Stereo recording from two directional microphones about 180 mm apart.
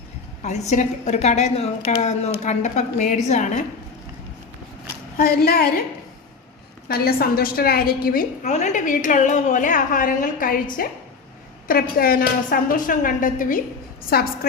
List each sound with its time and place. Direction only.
0.4 s a woman's voice: 40° left (ahead or behind)
5.1 s a woman's voice: 55° left (ahead or behind)
6.8 s a woman's voice: 60° left (ahead or behind)
14.1 s a woman's voice: 60° left (ahead or behind)